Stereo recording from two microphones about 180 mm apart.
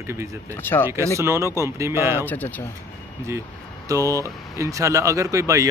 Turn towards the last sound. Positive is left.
turn(degrees=-15)  # may be behind; listen again after turning